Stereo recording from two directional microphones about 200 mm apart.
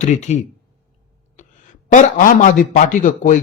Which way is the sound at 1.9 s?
40° left (ahead or behind).